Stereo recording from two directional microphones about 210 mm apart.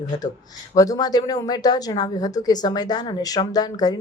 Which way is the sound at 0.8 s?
15° left (ahead or behind).